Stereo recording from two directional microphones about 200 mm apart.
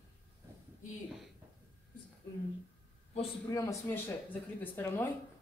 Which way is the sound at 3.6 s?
15° left (ahead or behind).